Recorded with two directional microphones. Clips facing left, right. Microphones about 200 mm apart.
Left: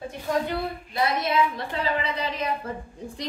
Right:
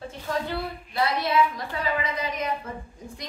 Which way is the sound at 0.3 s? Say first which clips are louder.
Left 3 dB; 20° left (ahead or behind).